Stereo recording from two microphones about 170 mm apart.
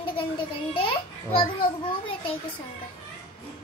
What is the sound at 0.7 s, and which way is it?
Babbling, 30° left (ahead or behind).